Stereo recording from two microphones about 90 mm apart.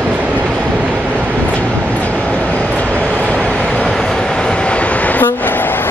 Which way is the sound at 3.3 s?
10° left (ahead or behind).